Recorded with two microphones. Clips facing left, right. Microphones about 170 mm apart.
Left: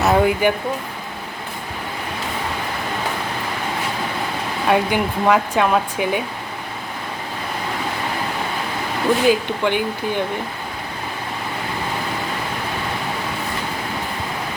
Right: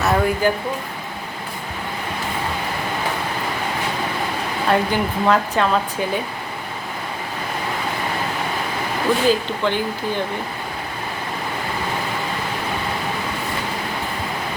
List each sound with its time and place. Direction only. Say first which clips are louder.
0.0 s speech: left 2 dB; 20° left (ahead or behind)
4.7 s speech: left 1 dB; 10° left (ahead or behind)
9.2 s speech: left 1 dB; 15° left (ahead or behind)